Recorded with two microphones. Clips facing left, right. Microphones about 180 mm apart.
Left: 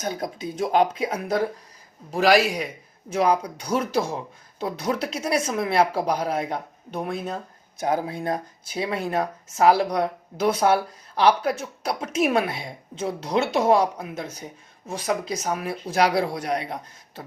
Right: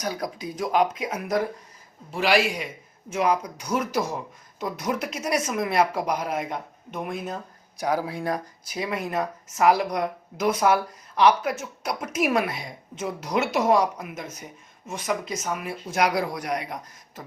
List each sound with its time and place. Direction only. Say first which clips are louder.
0.0 s speech: left 1 dB; 25° left (ahead or behind)
2.0 s speech: left 4 dB; 40° left (ahead or behind)